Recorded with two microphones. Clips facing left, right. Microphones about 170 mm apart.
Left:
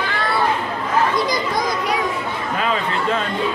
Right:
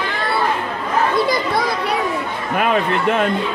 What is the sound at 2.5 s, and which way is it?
Speech, 60° right (ahead or behind).